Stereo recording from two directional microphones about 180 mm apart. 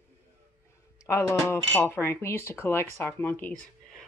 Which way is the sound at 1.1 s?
15° left (ahead or behind).